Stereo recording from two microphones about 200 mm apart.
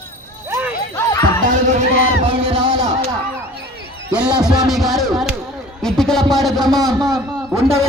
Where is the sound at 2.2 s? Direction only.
25° right (ahead or behind).